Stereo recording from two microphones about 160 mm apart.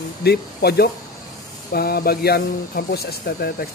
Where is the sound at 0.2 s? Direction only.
85° left.